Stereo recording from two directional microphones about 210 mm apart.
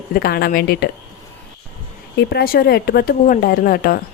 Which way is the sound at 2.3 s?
45° left (ahead or behind).